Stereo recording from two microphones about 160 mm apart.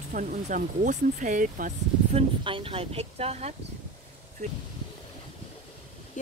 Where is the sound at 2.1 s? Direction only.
35° right (ahead or behind).